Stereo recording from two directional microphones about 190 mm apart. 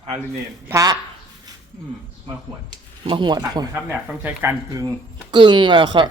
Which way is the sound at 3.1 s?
25° right (ahead or behind).